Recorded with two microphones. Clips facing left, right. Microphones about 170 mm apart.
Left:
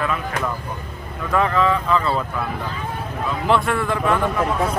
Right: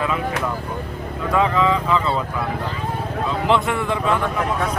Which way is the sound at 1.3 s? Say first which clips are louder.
Even; 15° right (ahead or behind).